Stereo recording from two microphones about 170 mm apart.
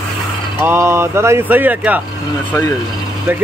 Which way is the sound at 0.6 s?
15° right (ahead or behind).